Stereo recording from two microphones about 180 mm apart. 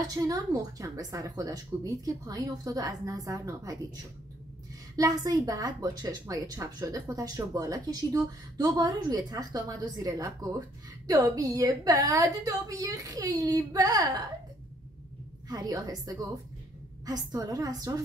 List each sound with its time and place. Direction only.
0.0 s a woman's voice: 20° right (ahead or behind)
15.4 s a woman's voice: 20° right (ahead or behind)